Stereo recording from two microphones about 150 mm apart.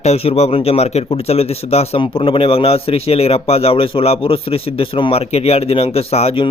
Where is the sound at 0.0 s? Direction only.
45° left (ahead or behind).